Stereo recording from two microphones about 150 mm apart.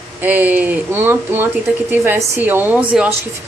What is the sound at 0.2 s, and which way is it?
Speech, 10° right (ahead or behind).